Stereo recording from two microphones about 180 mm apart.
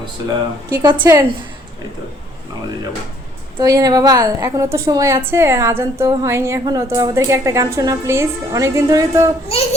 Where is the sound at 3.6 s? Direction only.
20° right (ahead or behind).